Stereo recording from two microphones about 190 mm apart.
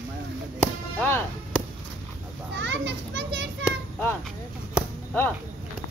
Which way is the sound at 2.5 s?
70° right (ahead or behind).